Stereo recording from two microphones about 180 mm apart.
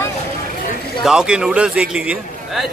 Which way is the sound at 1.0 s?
5° right (ahead or behind).